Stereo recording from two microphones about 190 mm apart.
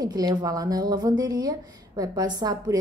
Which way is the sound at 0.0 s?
20° right (ahead or behind).